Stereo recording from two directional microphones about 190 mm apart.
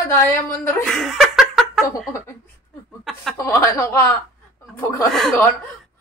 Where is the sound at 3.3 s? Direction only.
15° left (ahead or behind).